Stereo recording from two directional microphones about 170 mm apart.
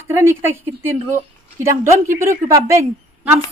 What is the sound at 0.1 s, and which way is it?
Speech, 15° right (ahead or behind).